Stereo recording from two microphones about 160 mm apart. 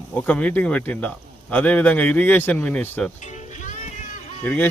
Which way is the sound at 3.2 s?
50° left (ahead or behind).